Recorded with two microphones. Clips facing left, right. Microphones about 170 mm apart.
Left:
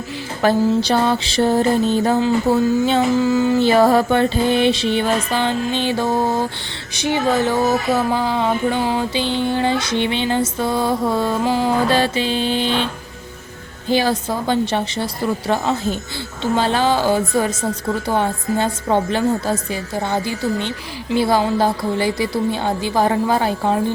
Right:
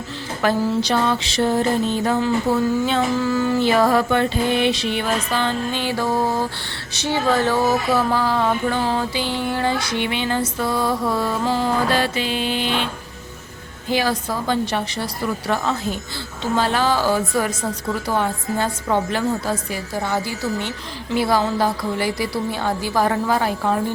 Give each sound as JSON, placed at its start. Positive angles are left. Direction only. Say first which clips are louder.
{"t": 0.4, "sound": "a sound", "louder": "left 4 dB", "side_deg": 30}
{"t": 2.0, "sound": "music", "louder": "left 3 dB", "side_deg": 25}
{"t": 6.9, "sound": "a woman's voice", "louder": "left 2 dB", "side_deg": 15}
{"t": 7.9, "sound": "music", "louder": "left 1 dB", "side_deg": 20}
{"t": 13.8, "sound": "music", "louder": "left 3 dB", "side_deg": 30}